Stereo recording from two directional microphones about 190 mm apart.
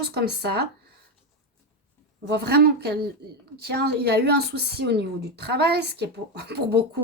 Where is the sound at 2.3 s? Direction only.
60° right (ahead or behind).